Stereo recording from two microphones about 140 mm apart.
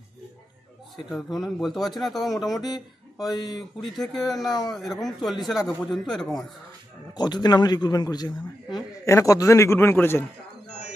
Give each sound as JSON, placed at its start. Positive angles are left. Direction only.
{"t": 1.1, "sound": "speech", "side_deg": 0}
{"t": 3.3, "sound": "speech", "side_deg": 30}
{"t": 3.8, "sound": "speech", "side_deg": 0}
{"t": 7.2, "sound": "a man's voice", "side_deg": 30}